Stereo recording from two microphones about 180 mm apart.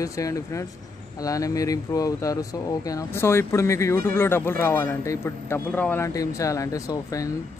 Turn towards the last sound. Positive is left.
turn(degrees=20)  # may be behind; listen again after turning